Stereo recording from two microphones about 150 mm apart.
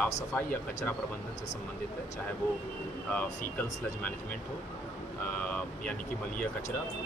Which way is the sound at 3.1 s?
10° left (ahead or behind).